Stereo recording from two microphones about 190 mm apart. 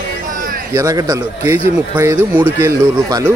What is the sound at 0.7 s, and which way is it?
Speech, 15° right (ahead or behind).